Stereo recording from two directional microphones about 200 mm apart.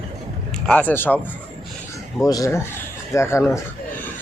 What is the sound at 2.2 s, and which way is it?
Speech, 20° left (ahead or behind).